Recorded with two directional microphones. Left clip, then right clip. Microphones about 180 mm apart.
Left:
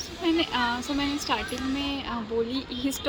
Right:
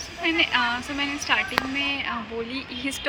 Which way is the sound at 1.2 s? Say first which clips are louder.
Right 6 dB; 15° left (ahead or behind).